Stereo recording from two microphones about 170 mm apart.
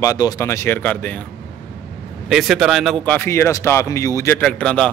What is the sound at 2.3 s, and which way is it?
Speech, centre (ahead or behind).